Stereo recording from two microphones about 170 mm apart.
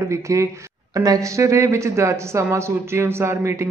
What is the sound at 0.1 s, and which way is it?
Speech, 20° right (ahead or behind).